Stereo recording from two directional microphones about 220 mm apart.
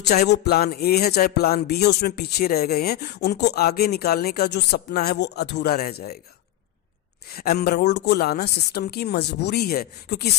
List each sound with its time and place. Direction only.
0.0 s speech: 45° left (ahead or behind)
7.3 s speech: 45° left (ahead or behind)